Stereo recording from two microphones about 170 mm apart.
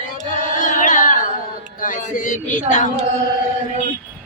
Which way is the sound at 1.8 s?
50° left (ahead or behind).